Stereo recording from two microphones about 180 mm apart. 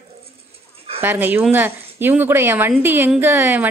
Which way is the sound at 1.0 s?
10° right (ahead or behind).